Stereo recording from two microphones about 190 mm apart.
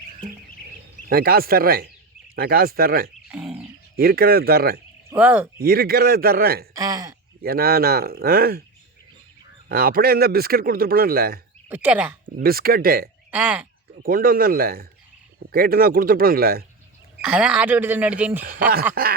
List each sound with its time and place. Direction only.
1.1 s speech: 50° right (ahead or behind)
3.3 s a sound: 5° right (ahead or behind)
3.9 s speech: 50° right (ahead or behind)
5.1 s speech: 10° right (ahead or behind)
5.5 s speech: 50° right (ahead or behind)
6.7 s speech: 20° right (ahead or behind)
7.4 s speech: 55° right (ahead or behind)
9.6 s speech: 50° right (ahead or behind)
11.7 s speech: 10° right (ahead or behind)
12.4 s speech: 50° right (ahead or behind)
13.3 s speech: 5° right (ahead or behind)
14.0 s speech: 50° right (ahead or behind)
17.2 s speech: 5° right (ahead or behind)